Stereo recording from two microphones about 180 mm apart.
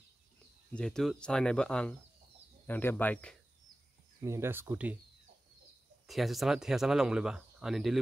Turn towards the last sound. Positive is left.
turn(degrees=0)  # may be behind; listen again after turning